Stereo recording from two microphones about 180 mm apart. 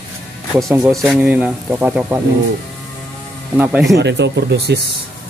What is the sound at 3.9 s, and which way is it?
Speech, 70° right (ahead or behind).